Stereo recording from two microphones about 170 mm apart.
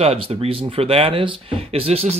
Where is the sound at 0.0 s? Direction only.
35° right (ahead or behind).